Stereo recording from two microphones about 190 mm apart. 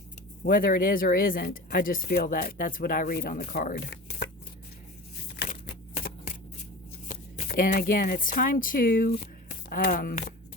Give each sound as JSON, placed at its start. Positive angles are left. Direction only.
{"t": 0.4, "sound": "speech", "side_deg": 50}
{"t": 7.1, "sound": "speech", "side_deg": 45}